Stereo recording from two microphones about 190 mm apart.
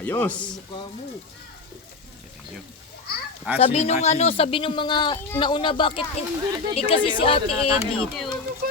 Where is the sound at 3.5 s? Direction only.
35° left (ahead or behind).